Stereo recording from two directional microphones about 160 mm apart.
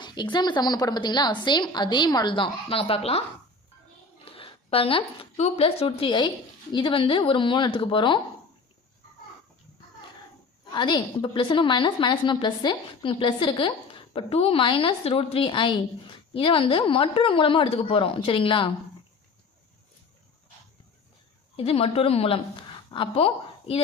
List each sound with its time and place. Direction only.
0.0 s a woman's voice: 30° left (ahead or behind)
4.3 s a woman's voice: 35° left (ahead or behind)
10.7 s a woman's voice: 30° left (ahead or behind)
21.5 s a woman's voice: 35° left (ahead or behind)